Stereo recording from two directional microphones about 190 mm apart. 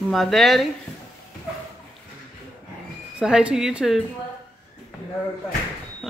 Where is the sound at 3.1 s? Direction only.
5° right (ahead or behind).